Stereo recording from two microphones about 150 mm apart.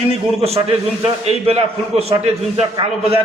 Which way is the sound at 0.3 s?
40° right (ahead or behind).